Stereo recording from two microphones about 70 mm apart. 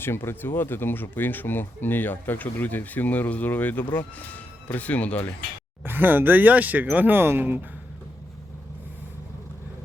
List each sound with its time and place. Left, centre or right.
0.0 s speech: left
5.8 s speech: right